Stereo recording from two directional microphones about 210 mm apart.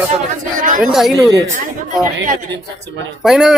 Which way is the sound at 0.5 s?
35° right (ahead or behind).